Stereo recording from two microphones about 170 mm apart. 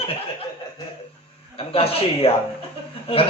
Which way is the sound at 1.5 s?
35° left (ahead or behind).